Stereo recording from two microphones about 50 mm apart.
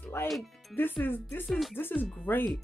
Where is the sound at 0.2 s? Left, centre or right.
Left.